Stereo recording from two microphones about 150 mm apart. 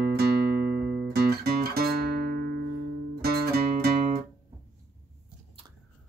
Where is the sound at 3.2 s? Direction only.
90° right.